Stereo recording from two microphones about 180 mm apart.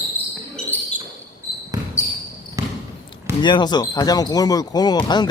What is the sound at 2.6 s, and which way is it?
Basketball bounce, 20° right (ahead or behind).